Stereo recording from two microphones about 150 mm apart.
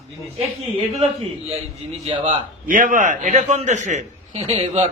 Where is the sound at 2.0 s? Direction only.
35° right (ahead or behind).